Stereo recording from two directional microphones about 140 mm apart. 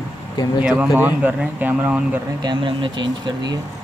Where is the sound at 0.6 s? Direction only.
5° right (ahead or behind).